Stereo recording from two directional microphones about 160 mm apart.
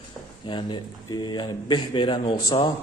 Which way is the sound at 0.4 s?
30° left (ahead or behind).